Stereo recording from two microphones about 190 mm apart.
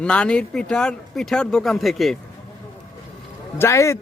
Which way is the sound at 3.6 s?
15° left (ahead or behind).